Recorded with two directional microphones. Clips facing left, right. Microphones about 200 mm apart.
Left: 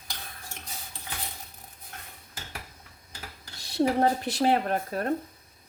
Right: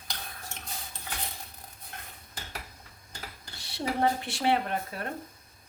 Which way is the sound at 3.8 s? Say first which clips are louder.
Left 5 dB; 40° left (ahead or behind).